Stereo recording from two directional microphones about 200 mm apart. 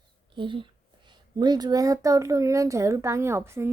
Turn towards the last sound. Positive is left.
turn(degrees=-10)  # may be behind; listen again after turning